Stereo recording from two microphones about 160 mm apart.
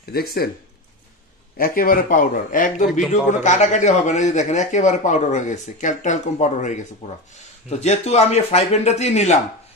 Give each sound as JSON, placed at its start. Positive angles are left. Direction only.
{"t": 0.1, "sound": "speech", "side_deg": 70}
{"t": 1.6, "sound": "a man's voice", "side_deg": 60}